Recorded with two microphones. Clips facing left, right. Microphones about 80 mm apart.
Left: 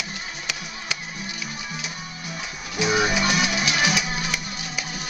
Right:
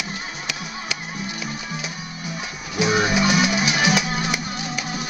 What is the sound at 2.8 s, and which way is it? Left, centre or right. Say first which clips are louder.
Music: right 2 dB; centre.